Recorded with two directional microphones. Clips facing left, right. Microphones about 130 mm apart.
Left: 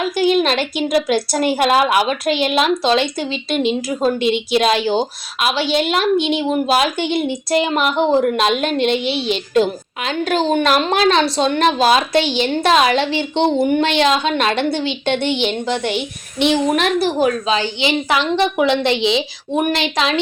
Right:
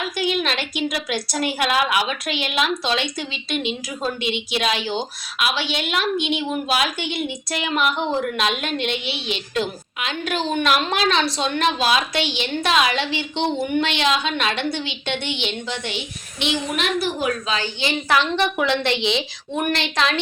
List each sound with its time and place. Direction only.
0.2 s a woman's voice: 35° left (ahead or behind); by 20.1 s 15° left (ahead or behind)